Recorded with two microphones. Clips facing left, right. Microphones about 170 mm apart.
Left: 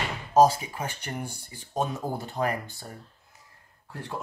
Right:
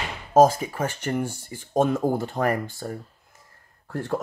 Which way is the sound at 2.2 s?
50° right (ahead or behind).